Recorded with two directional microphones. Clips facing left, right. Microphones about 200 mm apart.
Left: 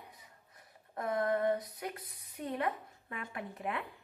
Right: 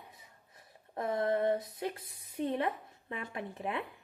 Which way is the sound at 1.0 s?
25° right (ahead or behind).